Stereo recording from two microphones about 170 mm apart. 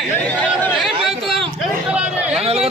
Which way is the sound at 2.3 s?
35° right (ahead or behind).